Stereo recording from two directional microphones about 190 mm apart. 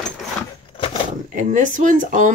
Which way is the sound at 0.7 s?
30° left (ahead or behind).